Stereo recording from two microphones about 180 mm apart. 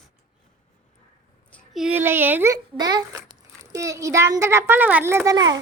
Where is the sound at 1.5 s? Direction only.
5° left (ahead or behind).